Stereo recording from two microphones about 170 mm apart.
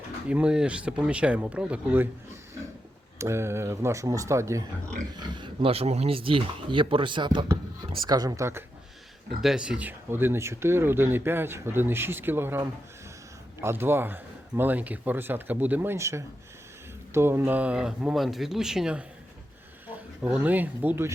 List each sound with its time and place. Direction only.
0.3 s speech: 5° right (ahead or behind)
9.4 s speech: 5° right (ahead or behind)
20.2 s speech: 10° right (ahead or behind)